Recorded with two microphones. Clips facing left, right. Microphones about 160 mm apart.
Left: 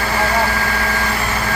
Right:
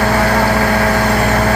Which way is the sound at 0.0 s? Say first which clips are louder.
Right 5 dB; 60° right (ahead or behind).